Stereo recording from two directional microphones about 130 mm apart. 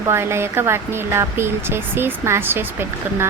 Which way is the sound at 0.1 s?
20° right (ahead or behind).